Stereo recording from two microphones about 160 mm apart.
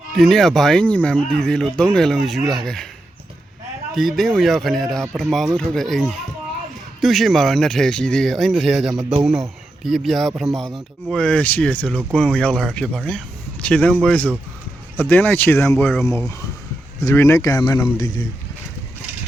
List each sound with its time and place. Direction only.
0.2 s speech: 5° left (ahead or behind)
3.9 s speech: centre (ahead or behind); by 18.3 s 25° left (ahead or behind)